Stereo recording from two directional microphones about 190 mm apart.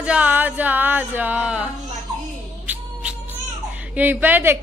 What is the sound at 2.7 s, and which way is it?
Music, 10° right (ahead or behind).